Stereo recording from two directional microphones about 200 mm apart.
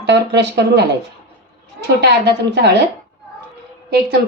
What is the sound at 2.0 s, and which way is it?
Speech, 60° right (ahead or behind).